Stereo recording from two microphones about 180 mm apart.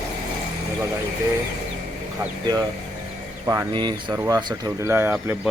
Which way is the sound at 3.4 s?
15° right (ahead or behind).